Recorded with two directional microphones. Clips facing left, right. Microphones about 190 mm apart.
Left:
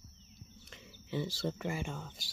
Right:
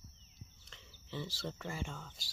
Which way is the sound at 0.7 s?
15° left (ahead or behind).